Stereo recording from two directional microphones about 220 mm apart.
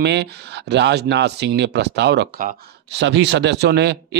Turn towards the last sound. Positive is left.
turn(degrees=-50)  # may be behind; listen again after turning